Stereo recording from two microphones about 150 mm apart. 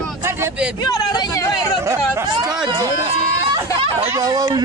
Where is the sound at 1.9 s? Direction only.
20° right (ahead or behind).